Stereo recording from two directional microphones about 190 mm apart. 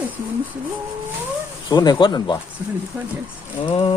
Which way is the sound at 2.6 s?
10° right (ahead or behind).